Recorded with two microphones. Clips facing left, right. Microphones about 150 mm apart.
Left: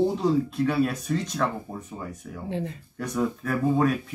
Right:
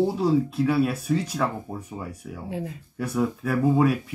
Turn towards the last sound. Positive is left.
turn(degrees=-5)  # may be behind; listen again after turning